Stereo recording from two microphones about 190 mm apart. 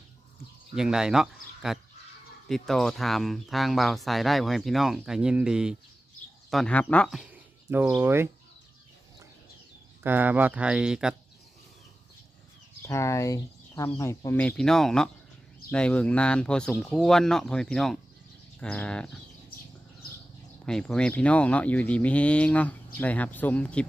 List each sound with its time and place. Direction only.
0.8 s speech: 5° right (ahead or behind)
7.7 s speech: 10° right (ahead or behind)
10.0 s speech: 10° right (ahead or behind)
12.8 s speech: 15° left (ahead or behind)
20.7 s speech: 5° left (ahead or behind)